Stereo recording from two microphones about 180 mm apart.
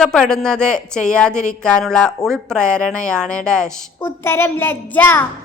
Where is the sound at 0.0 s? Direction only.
5° left (ahead or behind).